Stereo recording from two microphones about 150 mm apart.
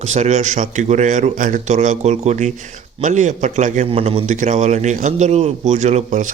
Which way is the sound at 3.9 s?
40° right (ahead or behind).